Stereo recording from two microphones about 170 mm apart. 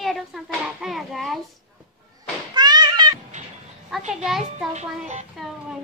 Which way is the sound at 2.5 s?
25° right (ahead or behind).